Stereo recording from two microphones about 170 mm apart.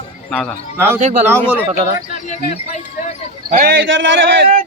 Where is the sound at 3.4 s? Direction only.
55° right (ahead or behind).